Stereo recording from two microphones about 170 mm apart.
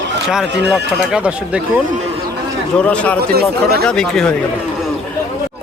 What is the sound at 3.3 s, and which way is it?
Speech, 65° right (ahead or behind).